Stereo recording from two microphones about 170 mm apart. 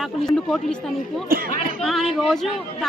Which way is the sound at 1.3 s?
60° right (ahead or behind).